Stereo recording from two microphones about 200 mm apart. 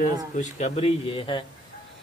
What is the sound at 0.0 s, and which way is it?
Speech, 35° left (ahead or behind).